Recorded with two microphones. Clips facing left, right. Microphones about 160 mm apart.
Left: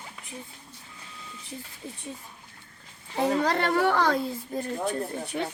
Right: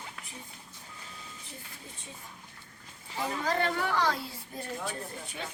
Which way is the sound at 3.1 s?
70° left (ahead or behind).